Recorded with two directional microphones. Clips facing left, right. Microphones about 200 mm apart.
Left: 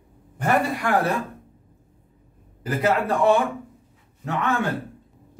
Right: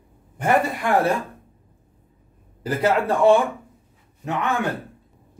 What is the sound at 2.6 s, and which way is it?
Speech, 30° right (ahead or behind).